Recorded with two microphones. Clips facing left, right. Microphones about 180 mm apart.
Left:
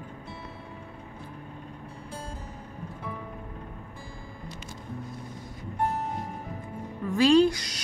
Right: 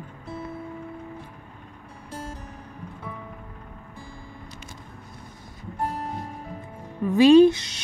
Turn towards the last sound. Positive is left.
turn(degrees=-25)  # may be behind; listen again after turning